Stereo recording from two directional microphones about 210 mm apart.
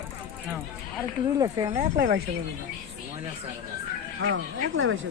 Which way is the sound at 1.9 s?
50° right (ahead or behind).